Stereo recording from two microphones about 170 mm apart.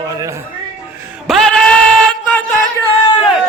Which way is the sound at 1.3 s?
5° left (ahead or behind).